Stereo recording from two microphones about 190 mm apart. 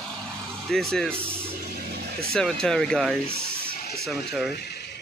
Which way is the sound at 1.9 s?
55° right (ahead or behind).